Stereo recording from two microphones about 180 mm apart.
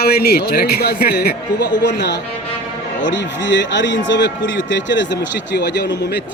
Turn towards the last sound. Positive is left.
turn(degrees=70)  # may be behind; listen again after turning